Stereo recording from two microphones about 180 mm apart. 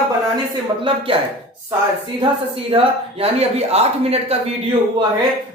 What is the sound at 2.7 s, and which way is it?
Speech, 30° right (ahead or behind).